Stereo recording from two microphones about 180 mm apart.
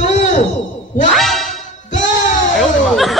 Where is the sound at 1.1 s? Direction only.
Centre (ahead or behind).